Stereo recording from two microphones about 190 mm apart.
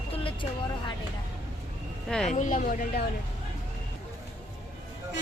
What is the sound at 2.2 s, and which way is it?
Speech, 40° left (ahead or behind).